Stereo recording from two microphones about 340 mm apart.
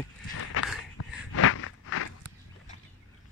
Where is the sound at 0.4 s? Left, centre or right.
Left.